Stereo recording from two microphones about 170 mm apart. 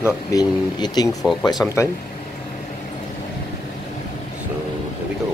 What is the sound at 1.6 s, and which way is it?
Speech, 15° left (ahead or behind).